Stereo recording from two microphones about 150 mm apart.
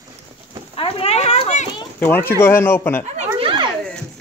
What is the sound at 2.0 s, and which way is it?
Speech, 10° left (ahead or behind).